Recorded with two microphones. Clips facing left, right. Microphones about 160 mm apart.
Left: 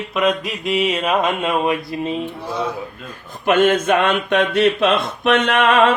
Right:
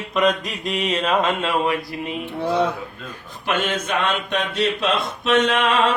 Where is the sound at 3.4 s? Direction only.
50° left (ahead or behind).